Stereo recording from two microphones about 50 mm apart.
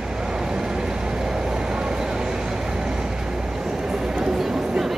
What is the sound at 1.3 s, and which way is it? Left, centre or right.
Vehicle, centre.